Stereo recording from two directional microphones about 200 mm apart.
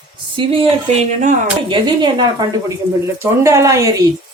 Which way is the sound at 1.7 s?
20° right (ahead or behind).